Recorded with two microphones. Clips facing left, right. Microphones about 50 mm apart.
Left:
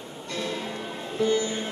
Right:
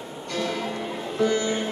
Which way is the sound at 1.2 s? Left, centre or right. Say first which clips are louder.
Right 2 dB; right.